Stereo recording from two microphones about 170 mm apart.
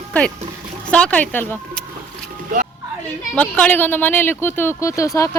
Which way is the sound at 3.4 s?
10° left (ahead or behind).